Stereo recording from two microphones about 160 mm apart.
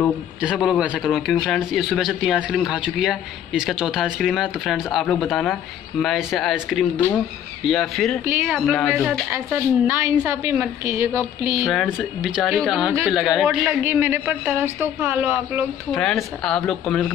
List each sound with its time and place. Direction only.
0.4 s a man's voice: 5° right (ahead or behind)
9.3 s a woman's voice: 15° right (ahead or behind)
11.6 s a man's voice: centre (ahead or behind)
15.9 s a man's voice: centre (ahead or behind)